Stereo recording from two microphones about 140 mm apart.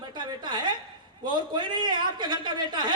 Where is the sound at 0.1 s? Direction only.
35° right (ahead or behind).